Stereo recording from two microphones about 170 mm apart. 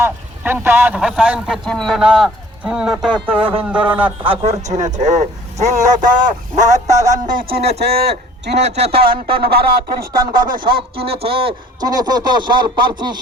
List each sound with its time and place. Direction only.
0.0 s a man's voice: 10° right (ahead or behind)
3.3 s speech: 30° right (ahead or behind)
3.6 s a man's voice: 10° right (ahead or behind)
4.2 s a man's voice: 35° right (ahead or behind); by 7.4 s 50° right (ahead or behind)
7.5 s a man's voice: 70° right (ahead or behind)
8.4 s a man's voice: 80° right; by 10.8 s 55° right (ahead or behind)
10.8 s speech: 35° right (ahead or behind)